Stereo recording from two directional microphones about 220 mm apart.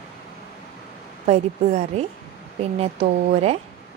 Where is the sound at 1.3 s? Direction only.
30° right (ahead or behind).